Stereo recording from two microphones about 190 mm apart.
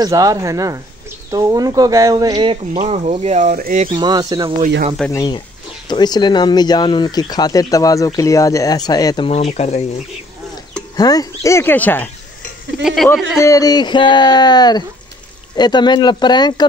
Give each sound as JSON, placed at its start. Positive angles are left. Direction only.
{"t": 0.0, "sound": "speech", "side_deg": -20}
{"t": 3.8, "sound": "speech", "side_deg": -25}
{"t": 5.1, "sound": "speech", "side_deg": 20}
{"t": 11.0, "sound": "speech", "side_deg": 20}
{"t": 13.4, "sound": "speech", "side_deg": 20}